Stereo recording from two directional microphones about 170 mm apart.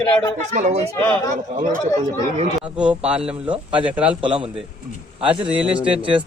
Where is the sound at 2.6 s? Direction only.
5° right (ahead or behind).